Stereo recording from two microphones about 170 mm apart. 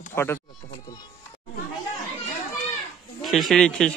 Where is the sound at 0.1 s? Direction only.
15° left (ahead or behind).